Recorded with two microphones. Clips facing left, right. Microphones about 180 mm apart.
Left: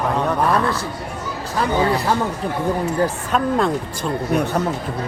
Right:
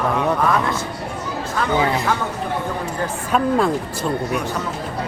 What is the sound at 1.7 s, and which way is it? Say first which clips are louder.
Speech: left 1 dB; 15° right (ahead or behind).